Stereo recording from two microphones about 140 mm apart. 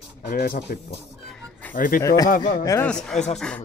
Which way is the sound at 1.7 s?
80° left.